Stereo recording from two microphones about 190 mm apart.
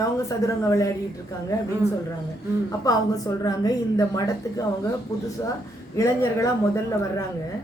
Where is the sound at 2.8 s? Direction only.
20° left (ahead or behind).